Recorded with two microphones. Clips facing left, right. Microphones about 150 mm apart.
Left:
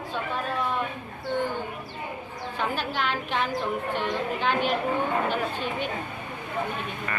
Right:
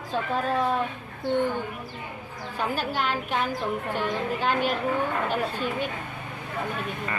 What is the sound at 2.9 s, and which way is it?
A woman's voice, 40° right (ahead or behind).